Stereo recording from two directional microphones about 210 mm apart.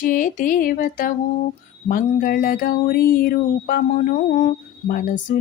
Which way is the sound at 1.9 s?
45° left (ahead or behind).